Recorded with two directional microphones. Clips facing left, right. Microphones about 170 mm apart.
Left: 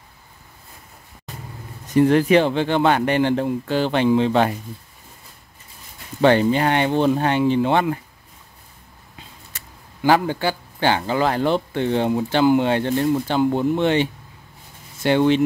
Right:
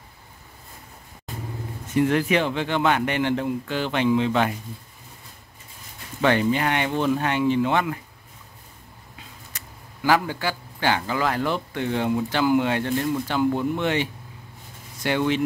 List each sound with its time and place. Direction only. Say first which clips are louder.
1.9 s speech: left 6 dB; 35° left (ahead or behind)
6.2 s speech: left 5 dB; 30° left (ahead or behind)
10.0 s speech: left 4 dB; 30° left (ahead or behind)